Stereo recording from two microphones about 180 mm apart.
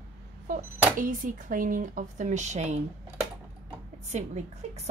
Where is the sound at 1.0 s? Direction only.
50° right (ahead or behind).